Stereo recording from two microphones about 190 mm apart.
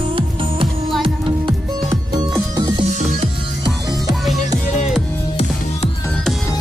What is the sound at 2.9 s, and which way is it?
Music, 35° right (ahead or behind).